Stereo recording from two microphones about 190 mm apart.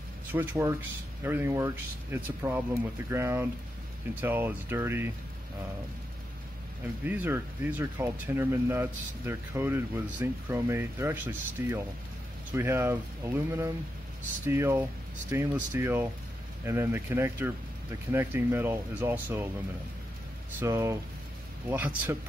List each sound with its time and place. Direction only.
0.3 s speech: 10° right (ahead or behind)
7.1 s speech: 10° right (ahead or behind)
20.5 s speech: 15° right (ahead or behind)